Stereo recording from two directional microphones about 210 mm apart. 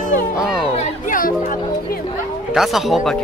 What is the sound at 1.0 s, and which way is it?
Music, 40° left (ahead or behind).